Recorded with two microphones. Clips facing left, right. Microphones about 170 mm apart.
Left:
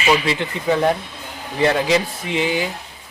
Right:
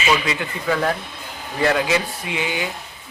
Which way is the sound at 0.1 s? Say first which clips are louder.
Left 4 dB; 25° left (ahead or behind).